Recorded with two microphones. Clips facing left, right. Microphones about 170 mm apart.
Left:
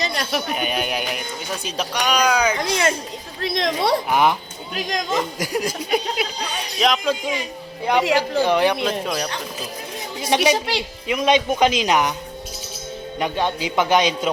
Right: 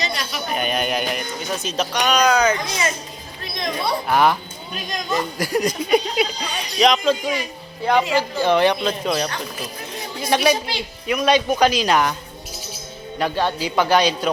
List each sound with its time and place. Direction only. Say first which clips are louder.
0.5 s speech: right 2 dB; 5° left (ahead or behind)
2.6 s speech: left 4 dB; 60° left (ahead or behind)
3.4 s a woman's voice: left 4 dB; 90° left
4.1 s speech: right 4 dB; 15° left (ahead or behind)
4.7 s a woman's voice: left 2 dB; 90° left
5.4 s speech: right 3 dB; 10° left (ahead or behind)
10.2 s speech: even; 20° left (ahead or behind)
10.5 s a woman's voice: left 1 dB; 75° left (ahead or behind)
11.1 s a man's voice: even; 20° left (ahead or behind)
13.1 s a man's voice: right 1 dB; 15° left (ahead or behind)